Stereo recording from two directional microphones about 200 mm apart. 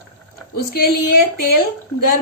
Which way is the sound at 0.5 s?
50° left (ahead or behind).